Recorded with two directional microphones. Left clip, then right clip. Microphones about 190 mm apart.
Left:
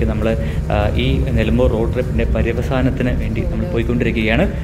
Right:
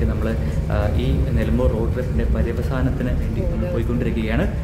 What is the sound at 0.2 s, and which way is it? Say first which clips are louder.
Speech: left 6 dB; 5° left (ahead or behind).